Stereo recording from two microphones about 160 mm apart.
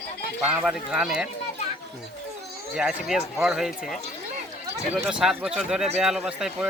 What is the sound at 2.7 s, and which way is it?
Speech, 5° right (ahead or behind).